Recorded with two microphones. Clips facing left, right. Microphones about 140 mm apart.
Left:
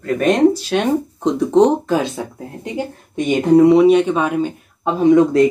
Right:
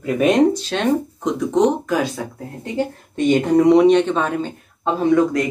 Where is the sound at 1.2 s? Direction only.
30° left (ahead or behind).